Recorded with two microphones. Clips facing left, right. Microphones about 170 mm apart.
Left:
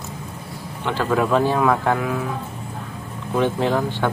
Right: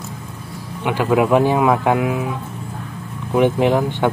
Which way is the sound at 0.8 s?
15° right (ahead or behind).